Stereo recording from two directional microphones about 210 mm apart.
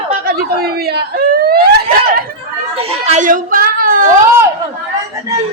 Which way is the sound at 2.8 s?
30° right (ahead or behind).